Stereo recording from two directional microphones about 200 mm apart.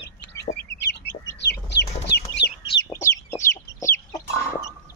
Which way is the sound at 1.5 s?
60° left (ahead or behind).